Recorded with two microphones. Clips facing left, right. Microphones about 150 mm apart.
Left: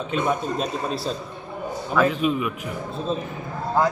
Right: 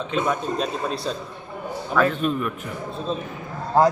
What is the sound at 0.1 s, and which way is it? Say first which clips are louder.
Speech: even; 5° left (ahead or behind).